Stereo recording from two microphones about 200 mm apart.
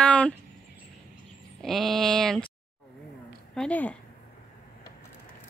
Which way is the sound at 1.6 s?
Centre (ahead or behind).